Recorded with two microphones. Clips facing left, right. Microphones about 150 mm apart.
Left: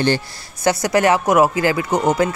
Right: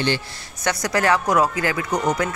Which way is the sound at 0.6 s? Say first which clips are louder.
Left 5 dB; 25° left (ahead or behind).